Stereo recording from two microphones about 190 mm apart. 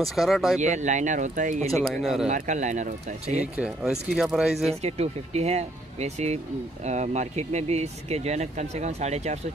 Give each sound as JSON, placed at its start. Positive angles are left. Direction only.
{"t": 0.1, "sound": "speech", "side_deg": 0}
{"t": 0.6, "sound": "speech", "side_deg": -40}
{"t": 1.7, "sound": "speech", "side_deg": 0}
{"t": 2.2, "sound": "speech", "side_deg": -40}
{"t": 3.5, "sound": "speech", "side_deg": -5}
{"t": 4.8, "sound": "speech", "side_deg": -35}